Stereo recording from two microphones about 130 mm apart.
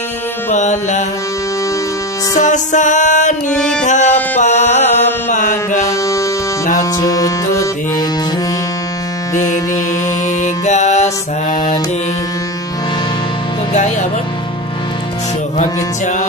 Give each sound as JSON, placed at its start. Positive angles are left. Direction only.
{"t": 0.5, "sound": "music", "side_deg": 65}
{"t": 2.3, "sound": "music", "side_deg": 75}
{"t": 3.5, "sound": "music", "side_deg": 5}
{"t": 3.8, "sound": "music", "side_deg": 70}
{"t": 5.9, "sound": "music", "side_deg": 25}
{"t": 10.4, "sound": "music", "side_deg": 65}
{"t": 15.5, "sound": "music", "side_deg": 65}